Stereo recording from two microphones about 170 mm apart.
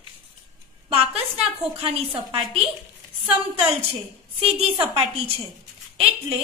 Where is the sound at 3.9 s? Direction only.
35° right (ahead or behind).